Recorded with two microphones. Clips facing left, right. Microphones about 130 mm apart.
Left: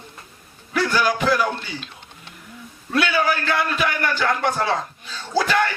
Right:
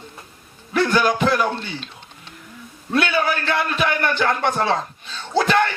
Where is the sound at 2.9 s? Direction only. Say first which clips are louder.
Even; 25° right (ahead or behind).